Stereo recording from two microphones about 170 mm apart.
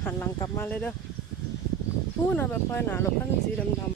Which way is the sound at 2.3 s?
10° left (ahead or behind).